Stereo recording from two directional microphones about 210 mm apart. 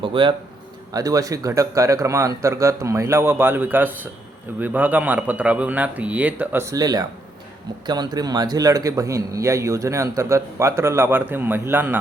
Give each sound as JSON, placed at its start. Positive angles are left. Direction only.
{"t": 0.0, "sound": "a man's voice", "side_deg": -25}